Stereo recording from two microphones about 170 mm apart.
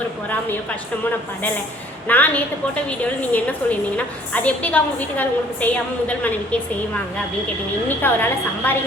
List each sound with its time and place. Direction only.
2.0 s a woman's voice: 10° left (ahead or behind)